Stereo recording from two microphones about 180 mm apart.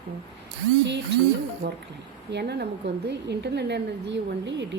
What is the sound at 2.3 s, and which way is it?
A woman's voice, 70° right (ahead or behind).